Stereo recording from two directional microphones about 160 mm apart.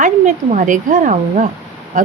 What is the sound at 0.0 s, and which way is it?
Speech, 50° right (ahead or behind).